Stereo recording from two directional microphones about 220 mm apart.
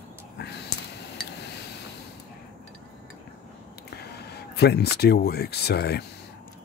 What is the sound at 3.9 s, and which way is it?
Speech, 45° left (ahead or behind).